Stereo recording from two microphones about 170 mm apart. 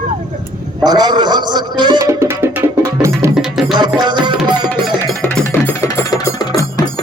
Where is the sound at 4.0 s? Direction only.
25° right (ahead or behind).